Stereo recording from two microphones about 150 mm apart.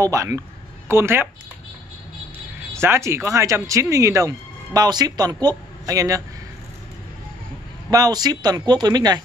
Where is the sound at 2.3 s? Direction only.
15° right (ahead or behind).